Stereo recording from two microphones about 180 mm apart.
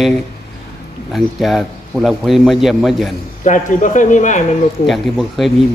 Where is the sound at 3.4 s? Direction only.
45° left (ahead or behind).